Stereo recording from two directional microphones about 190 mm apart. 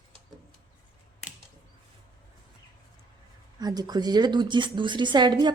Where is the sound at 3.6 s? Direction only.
20° right (ahead or behind).